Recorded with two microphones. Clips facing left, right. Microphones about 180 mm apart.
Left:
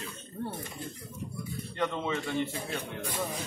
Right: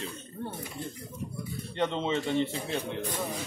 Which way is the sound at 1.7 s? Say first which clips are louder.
Right 3 dB; 25° right (ahead or behind).